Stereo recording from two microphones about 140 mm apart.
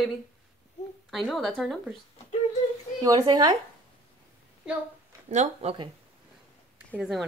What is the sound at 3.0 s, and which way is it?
Speech, 25° right (ahead or behind).